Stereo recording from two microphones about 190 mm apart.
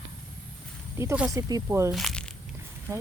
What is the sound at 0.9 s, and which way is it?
Speech, 15° right (ahead or behind).